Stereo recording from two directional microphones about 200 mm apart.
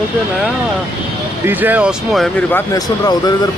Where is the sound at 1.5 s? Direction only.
10° right (ahead or behind).